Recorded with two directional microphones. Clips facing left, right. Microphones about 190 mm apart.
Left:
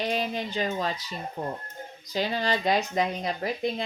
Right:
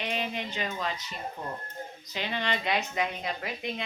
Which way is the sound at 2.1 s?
35° left (ahead or behind).